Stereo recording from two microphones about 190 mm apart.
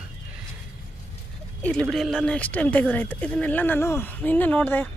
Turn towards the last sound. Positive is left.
turn(degrees=10)  # may be behind; listen again after turning